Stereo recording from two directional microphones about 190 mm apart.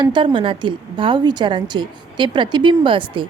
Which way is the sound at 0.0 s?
25° right (ahead or behind).